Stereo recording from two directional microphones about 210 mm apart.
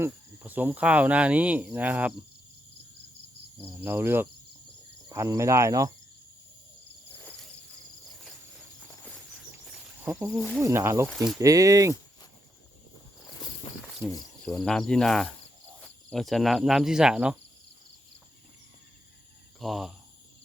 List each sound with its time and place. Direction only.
0.0 s speech: 10° right (ahead or behind)
3.6 s speech: 10° right (ahead or behind)
7.1 s cricket: 10° left (ahead or behind)
9.6 s a sound: 5° right (ahead or behind)
10.6 s speech: 15° right (ahead or behind)
13.4 s a sound: 20° left (ahead or behind)
14.4 s cricket: 5° left (ahead or behind)
15.8 s speech: 5° left (ahead or behind)
19.5 s speech: centre (ahead or behind)